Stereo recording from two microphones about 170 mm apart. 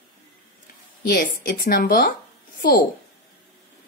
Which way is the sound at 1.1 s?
65° left (ahead or behind).